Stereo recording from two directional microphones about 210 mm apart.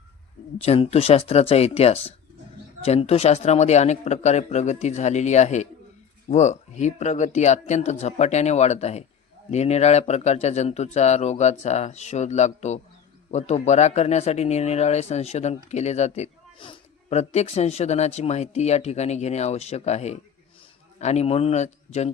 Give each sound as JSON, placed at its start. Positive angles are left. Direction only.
{"t": 0.6, "sound": "speech", "side_deg": 30}